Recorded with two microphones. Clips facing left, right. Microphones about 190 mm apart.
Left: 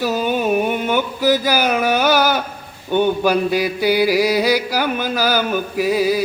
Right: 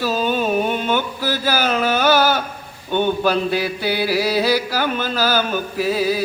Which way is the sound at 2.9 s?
15° left (ahead or behind).